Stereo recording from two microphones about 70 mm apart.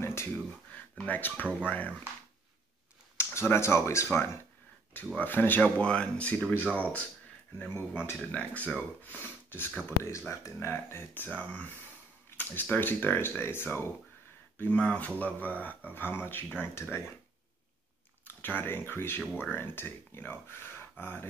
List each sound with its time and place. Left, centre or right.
0.0 s a sound: left
0.9 s speech: left
3.3 s speech: left
5.1 s speech: left
5.6 s speech: centre; by 10.7 s left
10.7 s speech: left
11.2 s speech: centre
12.3 s a sound: left
12.7 s speech: left
14.6 s speech: centre; by 16.9 s left
18.2 s speech: left